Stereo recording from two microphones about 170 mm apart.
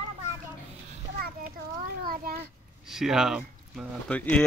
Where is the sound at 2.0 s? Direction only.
60° right (ahead or behind).